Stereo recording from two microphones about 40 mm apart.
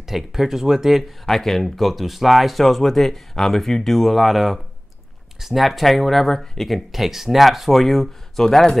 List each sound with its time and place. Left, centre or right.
0.0 s speech: centre
1.2 s speech: centre
6.3 s speech: centre
6.7 s speech: centre